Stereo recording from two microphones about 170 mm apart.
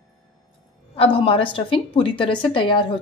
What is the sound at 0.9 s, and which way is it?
A woman's voice, 35° left (ahead or behind).